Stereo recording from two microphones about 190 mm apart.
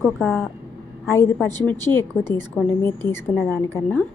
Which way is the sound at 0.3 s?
15° left (ahead or behind).